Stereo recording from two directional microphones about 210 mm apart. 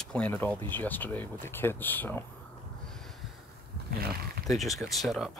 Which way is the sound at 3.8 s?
45° right (ahead or behind).